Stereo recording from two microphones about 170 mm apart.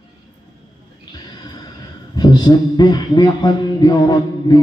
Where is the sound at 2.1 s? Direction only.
25° left (ahead or behind).